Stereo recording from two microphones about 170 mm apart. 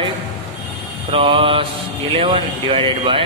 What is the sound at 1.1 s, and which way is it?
Speech, 30° right (ahead or behind).